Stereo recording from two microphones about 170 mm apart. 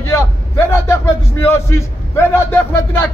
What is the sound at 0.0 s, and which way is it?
A man's voice, 15° left (ahead or behind).